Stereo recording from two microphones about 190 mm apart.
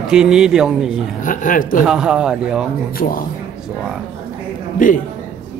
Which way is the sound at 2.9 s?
50° left (ahead or behind).